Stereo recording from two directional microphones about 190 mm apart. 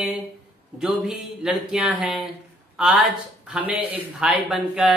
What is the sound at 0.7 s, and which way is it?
Speech, centre (ahead or behind).